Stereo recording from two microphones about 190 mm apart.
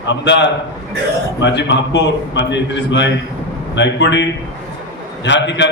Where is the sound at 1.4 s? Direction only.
70° left (ahead or behind).